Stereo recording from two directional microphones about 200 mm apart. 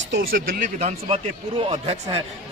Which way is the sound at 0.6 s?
35° right (ahead or behind).